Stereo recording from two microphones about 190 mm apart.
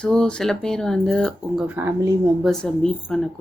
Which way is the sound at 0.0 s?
5° left (ahead or behind).